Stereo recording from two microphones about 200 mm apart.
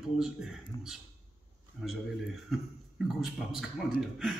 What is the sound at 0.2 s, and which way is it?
Speech, 5° right (ahead or behind).